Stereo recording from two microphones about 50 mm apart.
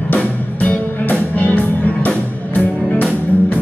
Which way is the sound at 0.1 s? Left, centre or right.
Left.